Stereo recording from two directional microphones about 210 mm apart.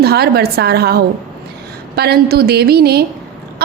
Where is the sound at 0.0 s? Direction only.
50° right (ahead or behind).